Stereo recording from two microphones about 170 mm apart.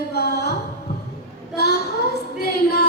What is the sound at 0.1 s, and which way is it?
Music, 70° left (ahead or behind).